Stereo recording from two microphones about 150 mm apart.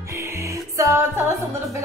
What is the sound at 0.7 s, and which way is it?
Speech, 20° right (ahead or behind).